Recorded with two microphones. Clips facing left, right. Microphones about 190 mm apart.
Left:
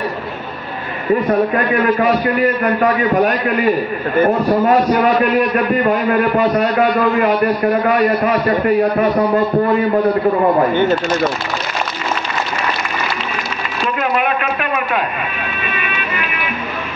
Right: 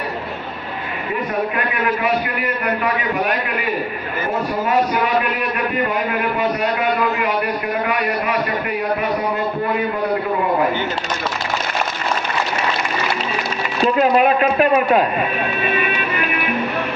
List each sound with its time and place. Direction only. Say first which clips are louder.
1.5 s a man's voice: left 6 dB; 40° left (ahead or behind)
10.7 s speech: left 8 dB; 55° left (ahead or behind)
13.9 s a man's voice: right 4 dB; 35° right (ahead or behind)
15.6 s music: right 3 dB; 40° right (ahead or behind)